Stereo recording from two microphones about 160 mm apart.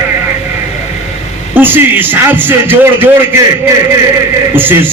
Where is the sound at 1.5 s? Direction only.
10° right (ahead or behind).